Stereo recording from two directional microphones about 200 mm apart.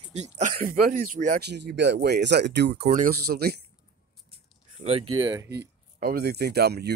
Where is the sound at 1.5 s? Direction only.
60° right (ahead or behind).